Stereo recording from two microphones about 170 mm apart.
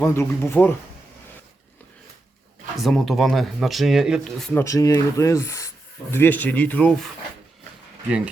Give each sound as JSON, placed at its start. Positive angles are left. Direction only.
{"t": 0.0, "sound": "speech", "side_deg": 15}
{"t": 2.7, "sound": "speech", "side_deg": 0}
{"t": 4.5, "sound": "speech", "side_deg": 20}